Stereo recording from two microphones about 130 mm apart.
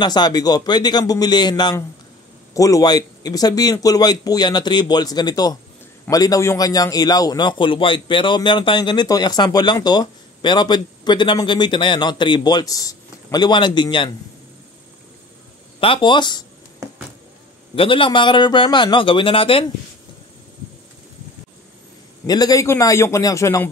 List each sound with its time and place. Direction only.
0.0 s a man's voice: 35° left (ahead or behind)
15.8 s a man's voice: 40° left (ahead or behind)
17.7 s a man's voice: 40° left (ahead or behind)
22.2 s a man's voice: 30° left (ahead or behind)